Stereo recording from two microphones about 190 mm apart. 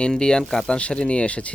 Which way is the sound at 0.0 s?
5° left (ahead or behind).